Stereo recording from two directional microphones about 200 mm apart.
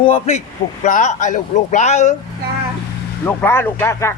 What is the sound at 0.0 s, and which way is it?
Speech, 30° left (ahead or behind).